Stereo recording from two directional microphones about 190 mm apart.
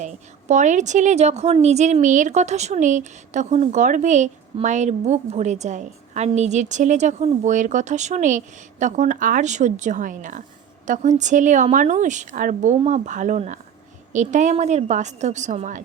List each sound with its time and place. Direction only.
0.0 s a woman's voice: 40° right (ahead or behind)